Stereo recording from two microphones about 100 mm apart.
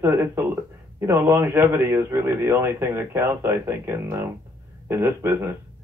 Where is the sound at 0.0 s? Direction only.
25° right (ahead or behind).